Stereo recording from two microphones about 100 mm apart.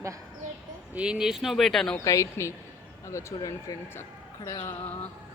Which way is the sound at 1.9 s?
35° left (ahead or behind).